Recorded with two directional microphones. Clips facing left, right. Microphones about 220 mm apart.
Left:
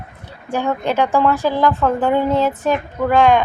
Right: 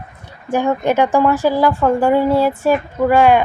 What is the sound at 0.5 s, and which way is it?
A woman's voice, 15° right (ahead or behind).